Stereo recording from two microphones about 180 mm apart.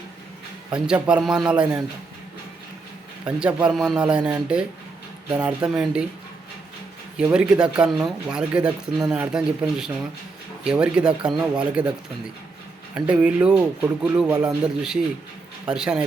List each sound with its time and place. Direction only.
0.7 s speech: 5° right (ahead or behind)
3.2 s speech: 5° right (ahead or behind)
7.2 s speech: 5° right (ahead or behind)
13.1 s speech: 5° right (ahead or behind)